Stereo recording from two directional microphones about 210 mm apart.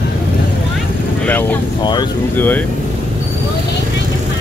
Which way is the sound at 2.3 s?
10° left (ahead or behind).